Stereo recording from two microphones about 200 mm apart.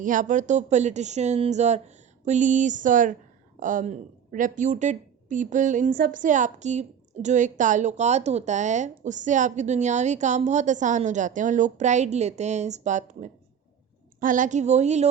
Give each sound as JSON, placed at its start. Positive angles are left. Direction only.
{"t": 0.0, "sound": "speech", "side_deg": -40}